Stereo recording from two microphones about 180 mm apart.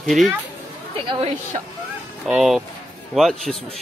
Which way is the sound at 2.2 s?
Centre (ahead or behind).